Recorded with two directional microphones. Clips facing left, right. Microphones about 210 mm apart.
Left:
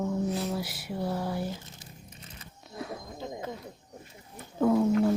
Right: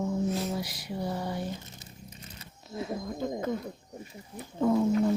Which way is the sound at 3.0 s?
50° right (ahead or behind).